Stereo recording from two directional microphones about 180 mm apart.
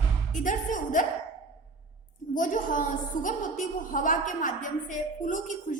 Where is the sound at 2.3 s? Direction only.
45° left (ahead or behind).